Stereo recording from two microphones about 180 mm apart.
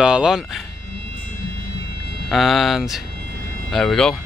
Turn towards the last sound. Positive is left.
turn(degrees=5)  # may be behind; listen again after turning